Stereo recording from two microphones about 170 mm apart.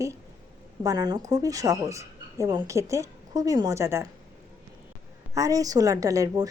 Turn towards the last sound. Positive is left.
turn(degrees=-20)  # may be behind; listen again after turning